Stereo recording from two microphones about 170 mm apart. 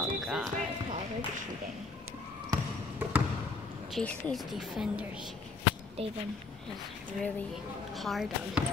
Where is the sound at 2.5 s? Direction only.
15° right (ahead or behind).